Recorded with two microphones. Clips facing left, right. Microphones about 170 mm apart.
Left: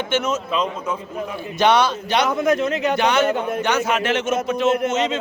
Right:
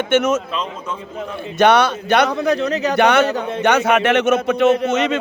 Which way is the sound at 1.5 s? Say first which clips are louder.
Right 3 dB; 60° right (ahead or behind).